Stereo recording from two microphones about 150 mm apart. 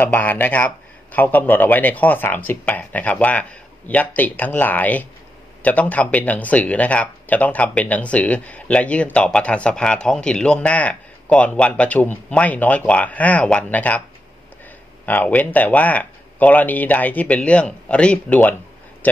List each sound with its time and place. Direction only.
0.0 s speech: 10° left (ahead or behind)
15.0 s speech: 10° left (ahead or behind)